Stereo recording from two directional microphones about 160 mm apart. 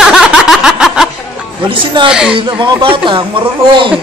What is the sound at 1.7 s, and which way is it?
Speech, 35° right (ahead or behind).